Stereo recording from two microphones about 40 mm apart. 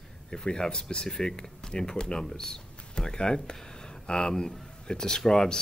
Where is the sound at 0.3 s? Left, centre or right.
Centre.